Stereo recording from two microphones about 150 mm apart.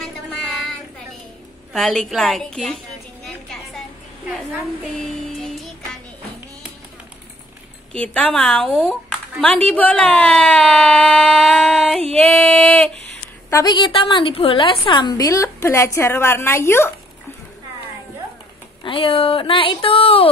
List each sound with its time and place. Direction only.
1.7 s a woman's voice: centre (ahead or behind)
3.3 s a sound: centre (ahead or behind)
5.0 s music: centre (ahead or behind)
7.9 s a woman's voice: 10° left (ahead or behind)
12.2 s music: 5° left (ahead or behind)
13.5 s a woman's voice: 25° left (ahead or behind)
18.9 s speech: 35° left (ahead or behind)